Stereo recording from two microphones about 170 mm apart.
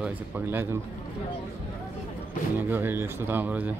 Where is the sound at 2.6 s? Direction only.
10° right (ahead or behind).